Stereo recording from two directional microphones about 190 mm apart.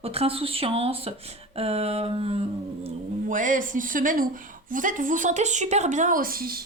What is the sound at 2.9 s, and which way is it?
Speech, 45° right (ahead or behind).